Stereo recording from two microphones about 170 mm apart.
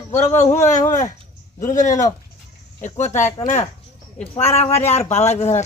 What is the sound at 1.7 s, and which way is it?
Speech, 45° left (ahead or behind).